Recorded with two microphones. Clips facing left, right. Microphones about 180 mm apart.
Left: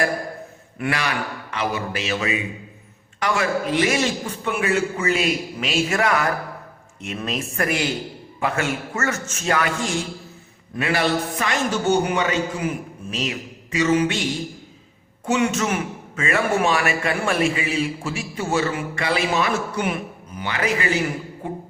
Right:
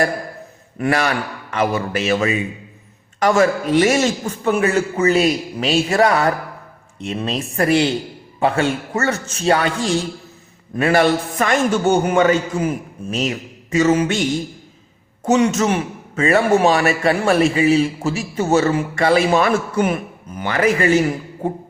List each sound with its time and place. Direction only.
0.8 s a man's voice: 45° right (ahead or behind)
10.8 s a man's voice: 45° right (ahead or behind)
15.2 s a man's voice: 40° right (ahead or behind)